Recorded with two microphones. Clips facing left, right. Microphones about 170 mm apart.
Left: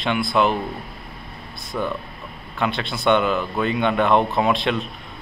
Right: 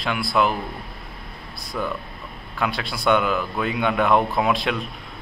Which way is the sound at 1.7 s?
20° left (ahead or behind).